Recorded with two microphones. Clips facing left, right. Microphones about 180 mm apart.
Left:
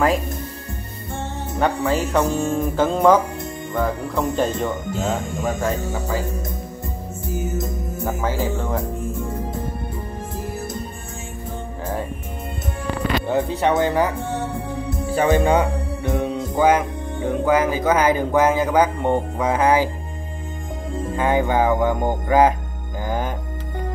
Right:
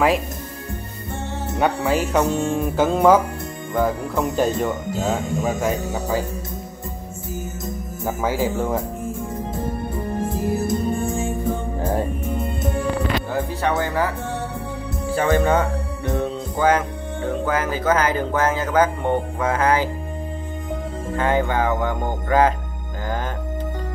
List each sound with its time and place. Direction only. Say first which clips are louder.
1.6 s speech: even; 5° right (ahead or behind)
2.5 s music: even; 5° right (ahead or behind)
5.6 s speech: right 1 dB; 15° right (ahead or behind)
8.0 s speech: right 2 dB; 10° right (ahead or behind)
13.3 s speech: left 3 dB; 20° left (ahead or behind)
15.1 s speech: left 1 dB; 15° left (ahead or behind)
21.2 s speech: left 2 dB; 10° left (ahead or behind)